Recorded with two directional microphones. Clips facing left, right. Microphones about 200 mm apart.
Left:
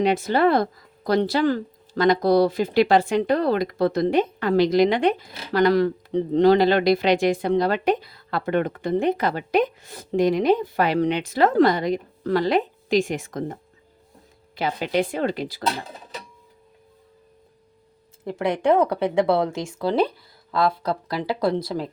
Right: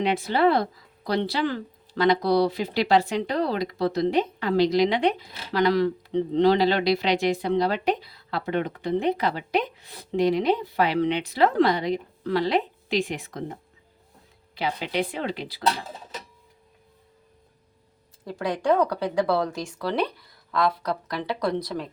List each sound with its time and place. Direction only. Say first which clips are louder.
0.0 s speech: left 3 dB; 45° left (ahead or behind)
18.3 s speech: left 3 dB; 25° left (ahead or behind)